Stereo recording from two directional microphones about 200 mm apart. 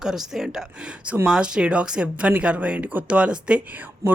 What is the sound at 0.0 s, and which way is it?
Speech, centre (ahead or behind).